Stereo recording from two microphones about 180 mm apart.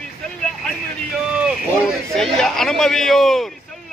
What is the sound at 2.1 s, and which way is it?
Speech, centre (ahead or behind).